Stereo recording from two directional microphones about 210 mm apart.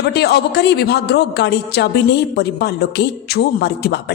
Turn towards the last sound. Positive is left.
turn(degrees=50)  # may be behind; listen again after turning